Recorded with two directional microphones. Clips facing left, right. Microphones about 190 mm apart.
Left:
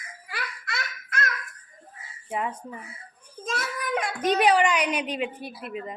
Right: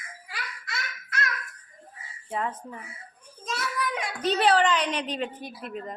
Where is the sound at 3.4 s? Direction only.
50° left (ahead or behind).